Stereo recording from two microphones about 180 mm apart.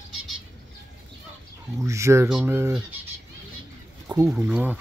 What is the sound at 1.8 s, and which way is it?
Speech, 15° right (ahead or behind).